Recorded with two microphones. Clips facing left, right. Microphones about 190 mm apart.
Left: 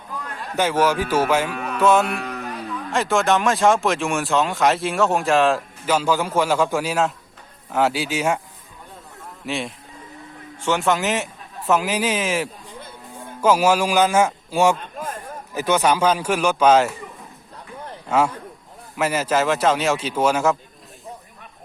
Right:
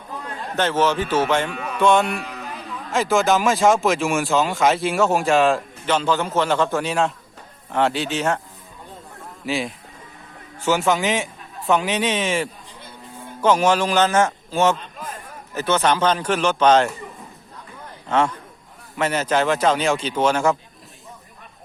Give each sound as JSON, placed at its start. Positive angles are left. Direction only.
{"t": 0.5, "sound": "speech", "side_deg": 10}
{"t": 1.5, "sound": "music", "side_deg": 55}
{"t": 1.8, "sound": "speech", "side_deg": 5}
{"t": 9.5, "sound": "speech", "side_deg": 0}
{"t": 14.8, "sound": "a sound", "side_deg": 50}
{"t": 15.5, "sound": "speech", "side_deg": 15}
{"t": 18.1, "sound": "speech", "side_deg": 10}